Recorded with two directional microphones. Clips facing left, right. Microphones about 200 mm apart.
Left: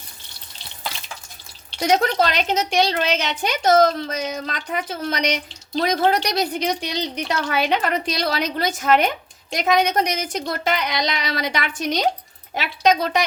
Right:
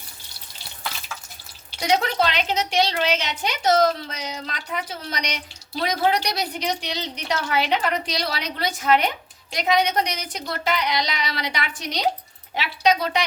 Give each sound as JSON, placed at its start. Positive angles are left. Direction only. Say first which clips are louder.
{"t": 1.8, "sound": "a woman's voice", "louder": "left 3 dB", "side_deg": 45}